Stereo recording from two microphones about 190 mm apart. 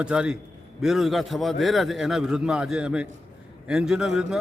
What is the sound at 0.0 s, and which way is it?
A man's voice, 5° right (ahead or behind).